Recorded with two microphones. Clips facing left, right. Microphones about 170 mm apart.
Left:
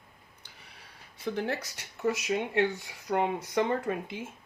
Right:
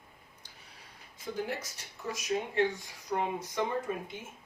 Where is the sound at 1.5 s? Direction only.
70° left (ahead or behind).